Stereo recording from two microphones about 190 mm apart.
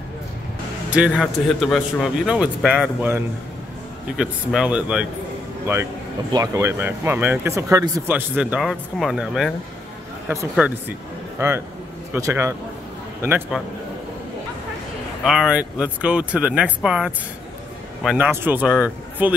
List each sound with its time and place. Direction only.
0.8 s a sound: 5° right (ahead or behind)
1.1 s a man's voice: 5° left (ahead or behind)
6.3 s speech: 20° right (ahead or behind); by 9.5 s centre (ahead or behind)
10.6 s speech: 5° right (ahead or behind)
15.2 s a man's voice: centre (ahead or behind)